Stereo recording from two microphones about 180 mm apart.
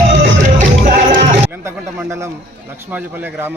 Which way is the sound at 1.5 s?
15° right (ahead or behind).